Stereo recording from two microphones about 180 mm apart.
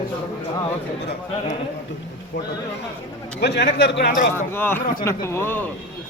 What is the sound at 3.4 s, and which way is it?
Speech, 65° left (ahead or behind).